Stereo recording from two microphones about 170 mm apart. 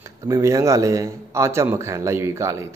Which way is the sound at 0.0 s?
15° right (ahead or behind).